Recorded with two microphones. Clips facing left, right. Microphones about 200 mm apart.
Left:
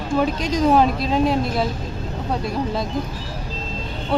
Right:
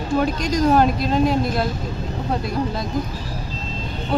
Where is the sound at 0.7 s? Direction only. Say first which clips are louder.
Even; centre (ahead or behind).